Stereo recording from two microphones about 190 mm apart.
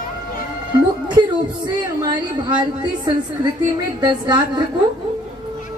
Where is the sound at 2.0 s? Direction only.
20° right (ahead or behind).